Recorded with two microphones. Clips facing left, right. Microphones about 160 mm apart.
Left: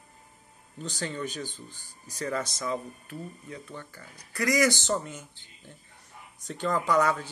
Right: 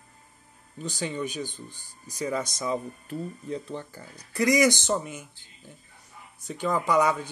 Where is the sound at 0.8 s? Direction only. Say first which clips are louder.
Right 3 dB; 10° right (ahead or behind).